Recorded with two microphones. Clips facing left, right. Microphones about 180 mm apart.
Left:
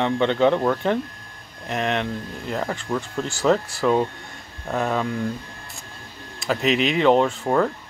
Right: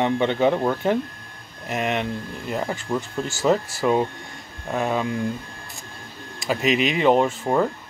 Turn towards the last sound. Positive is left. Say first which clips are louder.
# left 1 dB
turn(degrees=-10)  # may be behind; listen again after turning